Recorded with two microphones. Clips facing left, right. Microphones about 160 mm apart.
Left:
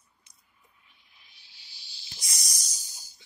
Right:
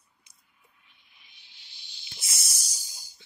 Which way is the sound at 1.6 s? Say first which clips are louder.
Even; centre (ahead or behind).